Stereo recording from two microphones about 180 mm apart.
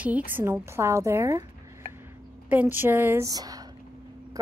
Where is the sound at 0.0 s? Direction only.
10° right (ahead or behind).